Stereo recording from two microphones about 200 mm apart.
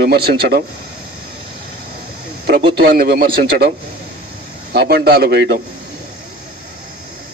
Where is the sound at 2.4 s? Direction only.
55° right (ahead or behind).